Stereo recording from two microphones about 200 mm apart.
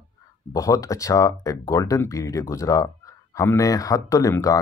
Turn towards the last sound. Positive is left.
turn(degrees=15)  # may be behind; listen again after turning